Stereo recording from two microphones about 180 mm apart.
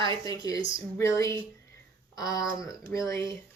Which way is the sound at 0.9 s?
15° left (ahead or behind).